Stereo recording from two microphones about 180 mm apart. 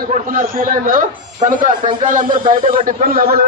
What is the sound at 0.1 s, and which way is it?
A man's voice, 50° right (ahead or behind).